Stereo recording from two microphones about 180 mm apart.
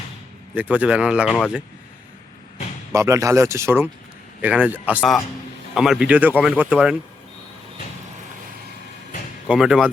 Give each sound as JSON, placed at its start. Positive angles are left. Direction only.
{"t": 0.5, "sound": "speech", "side_deg": -10}
{"t": 2.9, "sound": "speech", "side_deg": -15}
{"t": 9.5, "sound": "speech", "side_deg": -5}